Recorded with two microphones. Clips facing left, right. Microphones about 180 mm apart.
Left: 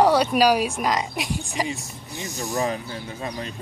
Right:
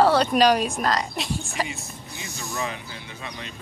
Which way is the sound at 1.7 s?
40° left (ahead or behind).